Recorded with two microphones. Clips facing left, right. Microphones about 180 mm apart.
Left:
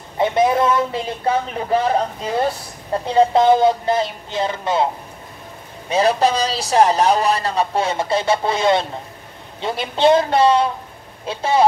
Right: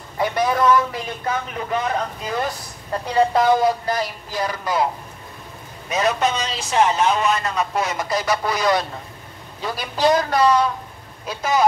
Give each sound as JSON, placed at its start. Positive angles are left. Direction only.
{"t": 0.2, "sound": "a man's voice", "side_deg": 25}
{"t": 5.9, "sound": "a man's voice", "side_deg": 30}